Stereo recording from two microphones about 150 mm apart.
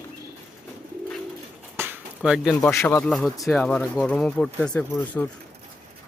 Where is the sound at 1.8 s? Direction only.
15° right (ahead or behind).